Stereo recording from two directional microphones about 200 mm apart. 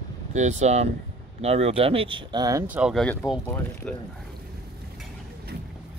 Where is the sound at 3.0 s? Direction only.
5° left (ahead or behind).